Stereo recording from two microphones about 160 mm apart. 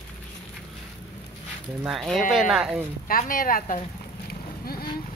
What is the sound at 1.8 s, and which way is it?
Speech, centre (ahead or behind).